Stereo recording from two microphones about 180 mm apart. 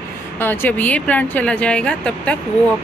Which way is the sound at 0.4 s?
10° left (ahead or behind).